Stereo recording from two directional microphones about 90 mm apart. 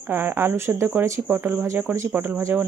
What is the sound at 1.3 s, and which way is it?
Speech, 20° right (ahead or behind).